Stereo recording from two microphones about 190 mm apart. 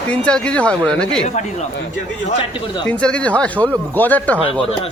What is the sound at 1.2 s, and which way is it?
Speech, 40° left (ahead or behind).